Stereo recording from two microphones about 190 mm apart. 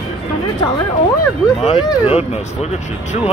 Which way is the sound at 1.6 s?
30° left (ahead or behind).